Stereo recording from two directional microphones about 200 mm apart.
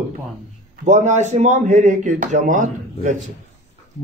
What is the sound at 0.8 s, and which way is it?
A man's voice, 35° right (ahead or behind).